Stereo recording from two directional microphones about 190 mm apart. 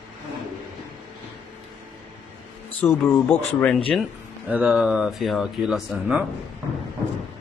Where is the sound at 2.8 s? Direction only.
15° left (ahead or behind).